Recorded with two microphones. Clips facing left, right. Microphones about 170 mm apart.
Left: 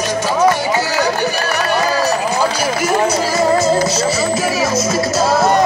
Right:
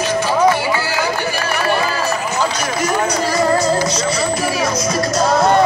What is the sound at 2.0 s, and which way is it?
Run, 35° left (ahead or behind).